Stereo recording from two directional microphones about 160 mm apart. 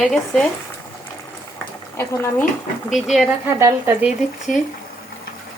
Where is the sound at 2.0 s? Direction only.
15° left (ahead or behind).